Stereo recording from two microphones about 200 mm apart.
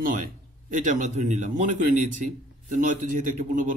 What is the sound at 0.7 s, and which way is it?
A man's voice, 40° right (ahead or behind).